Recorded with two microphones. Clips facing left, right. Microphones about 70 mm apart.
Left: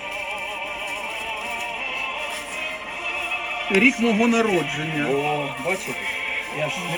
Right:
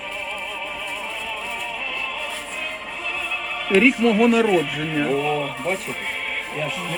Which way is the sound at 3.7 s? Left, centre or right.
Centre.